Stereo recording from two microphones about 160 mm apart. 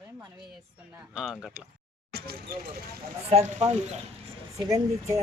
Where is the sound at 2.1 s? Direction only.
70° right (ahead or behind).